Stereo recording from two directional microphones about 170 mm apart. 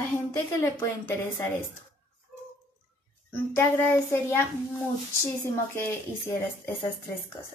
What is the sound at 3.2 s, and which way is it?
A woman's voice, 15° left (ahead or behind).